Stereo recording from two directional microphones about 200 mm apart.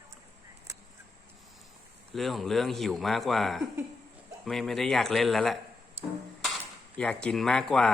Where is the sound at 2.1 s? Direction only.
Centre (ahead or behind).